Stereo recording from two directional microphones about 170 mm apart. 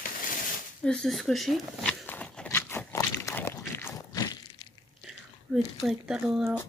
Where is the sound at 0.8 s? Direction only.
5° left (ahead or behind); by 4.4 s 20° left (ahead or behind).